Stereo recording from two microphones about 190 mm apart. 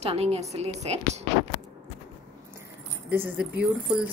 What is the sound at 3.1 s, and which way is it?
Speech, 10° right (ahead or behind).